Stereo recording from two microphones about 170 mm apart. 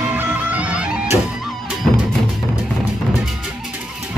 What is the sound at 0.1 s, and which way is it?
Music, 10° right (ahead or behind).